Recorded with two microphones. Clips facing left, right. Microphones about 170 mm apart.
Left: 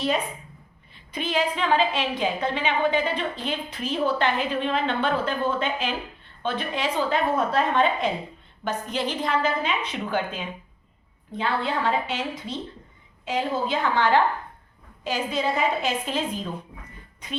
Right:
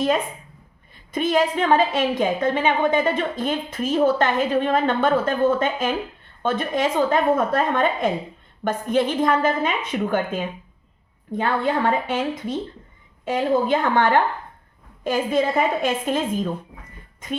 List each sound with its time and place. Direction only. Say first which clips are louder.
1.1 s a woman's voice: right 6 dB; 45° right (ahead or behind)